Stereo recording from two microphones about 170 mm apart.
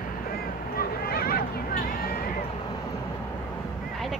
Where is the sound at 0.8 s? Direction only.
60° left (ahead or behind).